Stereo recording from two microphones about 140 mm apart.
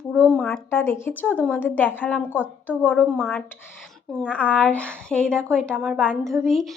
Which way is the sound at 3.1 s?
Centre (ahead or behind).